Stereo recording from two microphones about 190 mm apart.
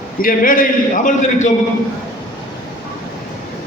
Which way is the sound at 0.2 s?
45° left (ahead or behind).